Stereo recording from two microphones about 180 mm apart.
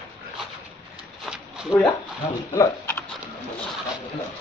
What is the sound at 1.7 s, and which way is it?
Speech, 25° left (ahead or behind).